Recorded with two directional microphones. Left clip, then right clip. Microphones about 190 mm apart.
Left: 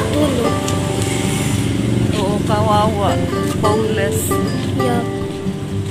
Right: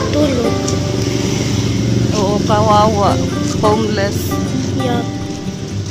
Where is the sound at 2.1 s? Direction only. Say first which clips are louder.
Right 5 dB; 20° right (ahead or behind).